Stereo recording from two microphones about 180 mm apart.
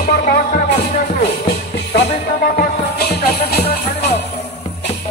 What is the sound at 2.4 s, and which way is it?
Music, 50° left (ahead or behind).